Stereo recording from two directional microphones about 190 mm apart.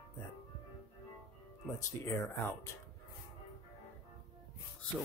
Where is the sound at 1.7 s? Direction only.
15° left (ahead or behind).